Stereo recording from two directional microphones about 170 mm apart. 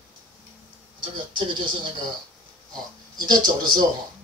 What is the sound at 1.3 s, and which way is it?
Speech, 30° right (ahead or behind).